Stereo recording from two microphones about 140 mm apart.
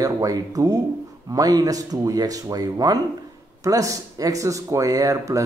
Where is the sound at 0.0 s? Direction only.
25° right (ahead or behind).